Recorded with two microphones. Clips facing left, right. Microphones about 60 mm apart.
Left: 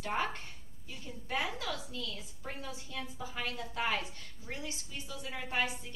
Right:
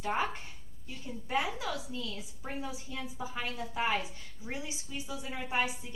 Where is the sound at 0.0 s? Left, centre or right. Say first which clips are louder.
Right 2 dB; centre.